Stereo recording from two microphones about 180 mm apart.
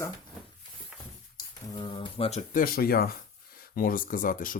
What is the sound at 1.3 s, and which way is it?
Speech, 30° left (ahead or behind).